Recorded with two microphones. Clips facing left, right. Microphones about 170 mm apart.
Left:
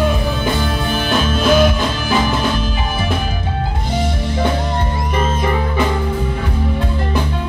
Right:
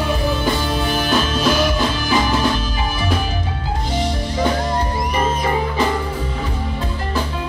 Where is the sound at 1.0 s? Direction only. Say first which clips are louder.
Left 4 dB; 55° left (ahead or behind).